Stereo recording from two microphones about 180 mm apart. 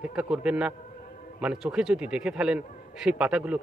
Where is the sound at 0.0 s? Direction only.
5° right (ahead or behind).